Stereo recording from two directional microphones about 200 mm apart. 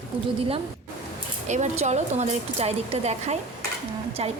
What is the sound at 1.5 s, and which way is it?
A woman's voice, 35° right (ahead or behind).